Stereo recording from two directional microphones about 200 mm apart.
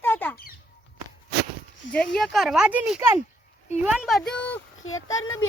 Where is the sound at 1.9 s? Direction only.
5° left (ahead or behind).